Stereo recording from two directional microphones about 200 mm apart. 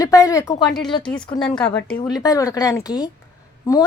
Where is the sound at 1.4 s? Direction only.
5° left (ahead or behind).